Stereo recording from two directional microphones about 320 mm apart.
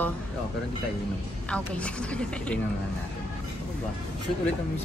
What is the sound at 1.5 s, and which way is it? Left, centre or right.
A man's voice, centre.